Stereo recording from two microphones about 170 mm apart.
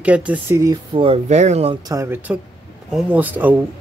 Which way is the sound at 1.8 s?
15° right (ahead or behind).